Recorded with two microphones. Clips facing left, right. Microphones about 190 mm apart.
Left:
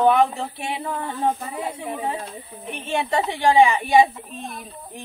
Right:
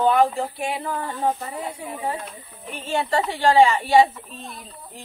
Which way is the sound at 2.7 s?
20° left (ahead or behind).